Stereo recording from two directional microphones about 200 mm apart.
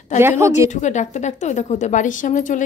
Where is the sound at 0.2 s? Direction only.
10° right (ahead or behind).